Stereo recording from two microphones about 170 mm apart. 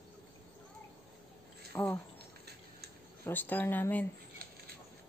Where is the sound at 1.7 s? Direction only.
20° left (ahead or behind).